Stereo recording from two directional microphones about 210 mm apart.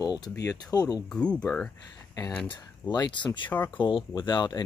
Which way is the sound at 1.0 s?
5° left (ahead or behind).